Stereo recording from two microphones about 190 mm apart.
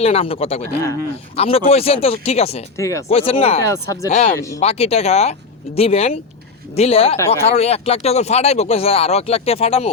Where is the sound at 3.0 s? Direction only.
30° left (ahead or behind).